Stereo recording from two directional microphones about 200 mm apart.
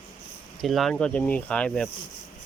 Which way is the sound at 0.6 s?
Centre (ahead or behind).